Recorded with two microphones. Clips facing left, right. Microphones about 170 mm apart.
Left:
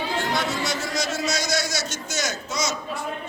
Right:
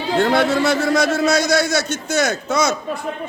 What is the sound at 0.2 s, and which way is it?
A man's voice, 60° right (ahead or behind).